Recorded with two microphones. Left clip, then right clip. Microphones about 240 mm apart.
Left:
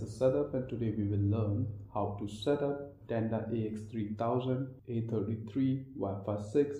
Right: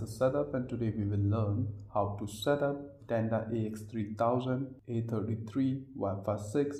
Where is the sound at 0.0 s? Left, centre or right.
Right.